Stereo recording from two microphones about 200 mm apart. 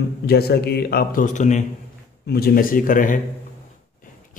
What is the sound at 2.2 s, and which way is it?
Speech, 50° left (ahead or behind).